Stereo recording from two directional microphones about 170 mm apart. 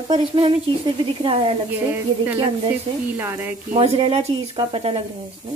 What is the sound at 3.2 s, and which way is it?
Speech, 10° right (ahead or behind).